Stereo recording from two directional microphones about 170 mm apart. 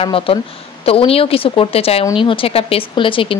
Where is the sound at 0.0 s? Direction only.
30° left (ahead or behind).